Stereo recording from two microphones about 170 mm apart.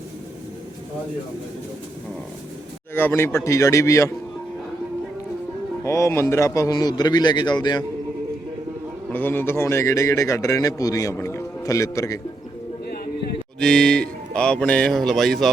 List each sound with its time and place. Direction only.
2.9 s a man's voice: 15° left (ahead or behind)
5.8 s a man's voice: 15° left (ahead or behind)
9.1 s a man's voice: 10° left (ahead or behind)
13.6 s speech: 5° left (ahead or behind)